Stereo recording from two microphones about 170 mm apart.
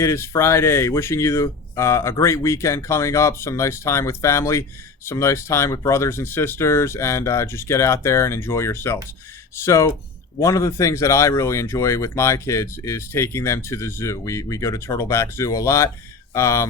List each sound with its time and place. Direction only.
0.0 s speech: 15° left (ahead or behind)